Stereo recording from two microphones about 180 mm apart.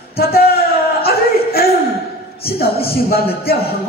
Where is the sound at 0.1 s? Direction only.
60° left (ahead or behind).